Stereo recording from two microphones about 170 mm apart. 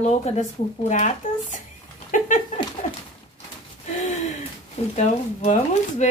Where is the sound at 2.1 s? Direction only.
45° left (ahead or behind).